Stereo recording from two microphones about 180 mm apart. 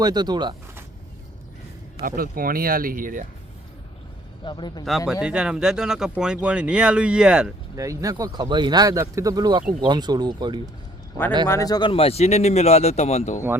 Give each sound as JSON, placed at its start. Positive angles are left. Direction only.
{"t": 0.0, "sound": "speech", "side_deg": -25}
{"t": 2.0, "sound": "speech", "side_deg": -55}
{"t": 4.4, "sound": "speech", "side_deg": 25}
{"t": 4.9, "sound": "speech", "side_deg": 0}
{"t": 7.8, "sound": "speech", "side_deg": -20}
{"t": 11.4, "sound": "a man's voice", "side_deg": 15}